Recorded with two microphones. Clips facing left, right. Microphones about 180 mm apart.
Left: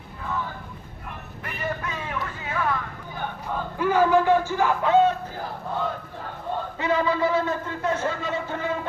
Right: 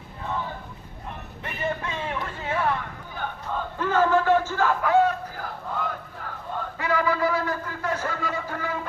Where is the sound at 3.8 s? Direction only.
10° left (ahead or behind).